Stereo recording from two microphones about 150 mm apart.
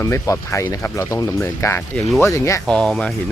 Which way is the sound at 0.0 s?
20° left (ahead or behind).